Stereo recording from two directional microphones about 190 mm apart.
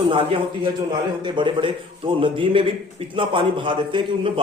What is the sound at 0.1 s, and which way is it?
A man's voice, 25° right (ahead or behind).